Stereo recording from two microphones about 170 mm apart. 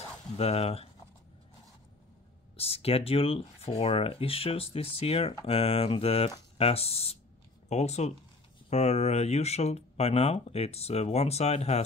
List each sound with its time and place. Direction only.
0.4 s speech: 35° left (ahead or behind)
2.5 s speech: 35° left (ahead or behind)